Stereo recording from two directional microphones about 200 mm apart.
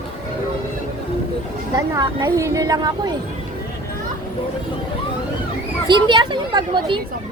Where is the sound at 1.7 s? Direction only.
20° right (ahead or behind).